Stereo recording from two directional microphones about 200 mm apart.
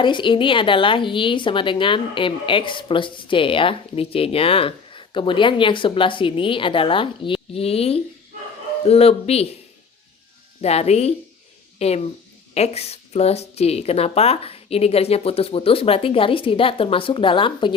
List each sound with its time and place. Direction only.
0.0 s a woman's voice: 25° left (ahead or behind)
10.6 s a woman's voice: 30° left (ahead or behind)